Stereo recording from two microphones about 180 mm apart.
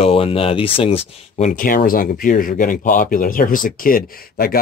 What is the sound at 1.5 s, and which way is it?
Speech, 50° left (ahead or behind).